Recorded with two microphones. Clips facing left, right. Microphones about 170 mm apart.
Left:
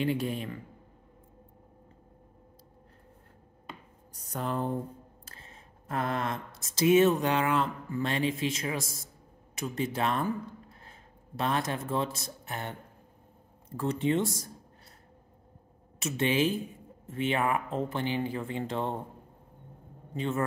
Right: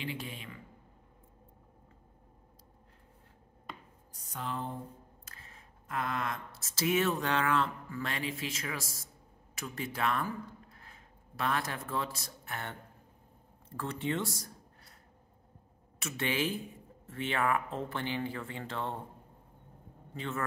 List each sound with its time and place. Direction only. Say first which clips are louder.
0.0 s a man's voice: left 11 dB; 45° left (ahead or behind)
4.1 s speech: left 6 dB; 45° left (ahead or behind)
5.2 s a sound: left 3 dB; 25° left (ahead or behind)
6.5 s speech: left 9 dB; 20° left (ahead or behind)
16.0 s speech: left 6 dB; 20° left (ahead or behind)
20.2 s speech: left 7 dB; 20° left (ahead or behind)